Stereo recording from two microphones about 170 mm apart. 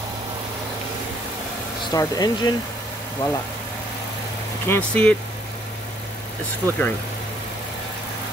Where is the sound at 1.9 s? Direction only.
20° left (ahead or behind).